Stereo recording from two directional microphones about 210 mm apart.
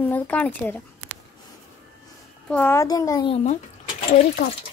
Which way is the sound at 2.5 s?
10° left (ahead or behind).